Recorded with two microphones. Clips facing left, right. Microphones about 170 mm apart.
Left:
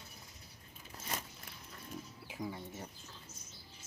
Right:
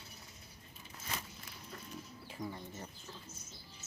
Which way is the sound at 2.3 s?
10° left (ahead or behind).